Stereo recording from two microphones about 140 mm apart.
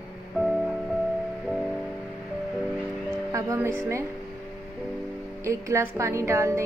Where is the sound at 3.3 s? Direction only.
25° right (ahead or behind).